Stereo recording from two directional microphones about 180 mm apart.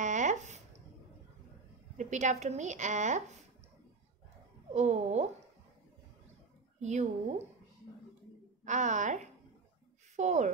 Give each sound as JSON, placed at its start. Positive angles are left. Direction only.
{"t": 0.0, "sound": "a sound", "side_deg": -45}
{"t": 2.0, "sound": "a woman's voice", "side_deg": -40}
{"t": 4.7, "sound": "a woman's voice", "side_deg": -40}
{"t": 6.8, "sound": "a woman's voice", "side_deg": -40}
{"t": 8.6, "sound": "a woman's voice", "side_deg": -40}